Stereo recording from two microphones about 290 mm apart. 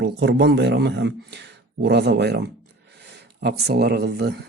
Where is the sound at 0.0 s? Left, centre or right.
Right.